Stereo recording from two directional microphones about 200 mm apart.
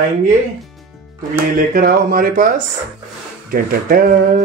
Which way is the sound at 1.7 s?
45° right (ahead or behind).